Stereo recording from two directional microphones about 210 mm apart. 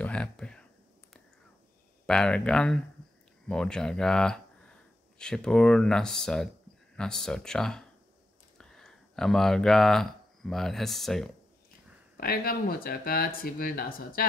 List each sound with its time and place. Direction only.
0.0 s a sound: 5° left (ahead or behind)
2.0 s speech: 5° left (ahead or behind)
12.2 s speech: 45° left (ahead or behind)